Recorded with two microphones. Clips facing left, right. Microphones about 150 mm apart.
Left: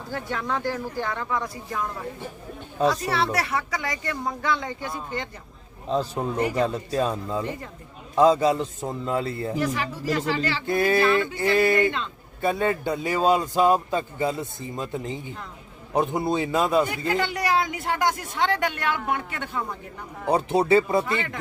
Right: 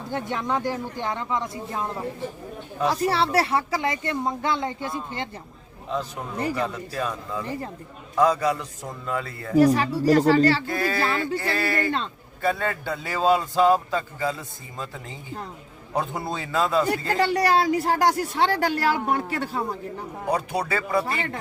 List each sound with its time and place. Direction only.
0.1 s speech: 20° right (ahead or behind)
5.9 s a man's voice: 30° left (ahead or behind)
9.6 s a woman's voice: 35° right (ahead or behind)
10.7 s a man's voice: 20° left (ahead or behind)
17.1 s a woman's voice: 35° right (ahead or behind)
20.3 s a man's voice: 25° left (ahead or behind)